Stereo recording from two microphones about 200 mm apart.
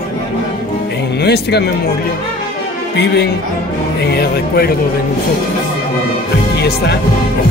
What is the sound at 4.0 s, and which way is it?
Speech, 50° left (ahead or behind).